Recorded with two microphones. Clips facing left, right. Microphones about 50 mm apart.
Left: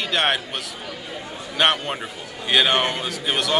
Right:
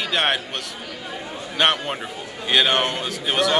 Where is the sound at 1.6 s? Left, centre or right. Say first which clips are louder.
Even; centre.